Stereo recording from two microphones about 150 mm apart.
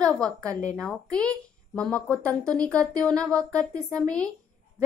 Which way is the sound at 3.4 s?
20° right (ahead or behind).